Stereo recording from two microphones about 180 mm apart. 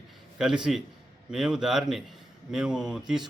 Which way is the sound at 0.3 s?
5° right (ahead or behind).